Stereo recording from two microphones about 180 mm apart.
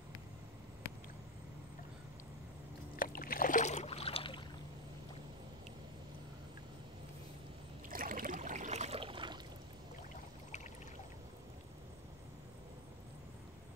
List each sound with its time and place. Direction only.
3.0 s rowboat: 55° left (ahead or behind); by 4.5 s 30° left (ahead or behind)
7.9 s trickle: 50° right (ahead or behind); by 9.4 s 25° right (ahead or behind)